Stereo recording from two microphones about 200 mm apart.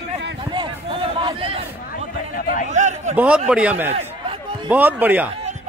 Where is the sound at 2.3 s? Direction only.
45° left (ahead or behind).